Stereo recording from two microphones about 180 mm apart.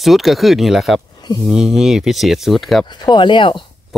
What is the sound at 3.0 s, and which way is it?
Speech, 25° left (ahead or behind).